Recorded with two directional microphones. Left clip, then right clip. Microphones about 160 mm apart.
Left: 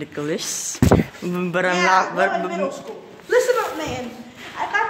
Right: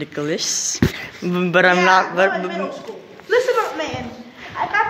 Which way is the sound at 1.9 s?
5° right (ahead or behind).